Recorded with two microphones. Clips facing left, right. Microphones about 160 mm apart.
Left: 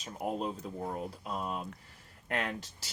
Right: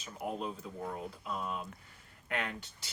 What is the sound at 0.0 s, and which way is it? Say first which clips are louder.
Speech: left 3 dB; 35° left (ahead or behind).